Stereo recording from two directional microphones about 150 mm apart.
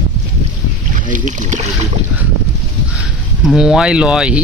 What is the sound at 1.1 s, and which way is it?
Speech, 55° right (ahead or behind).